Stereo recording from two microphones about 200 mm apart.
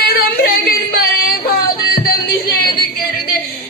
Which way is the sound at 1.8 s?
50° left (ahead or behind).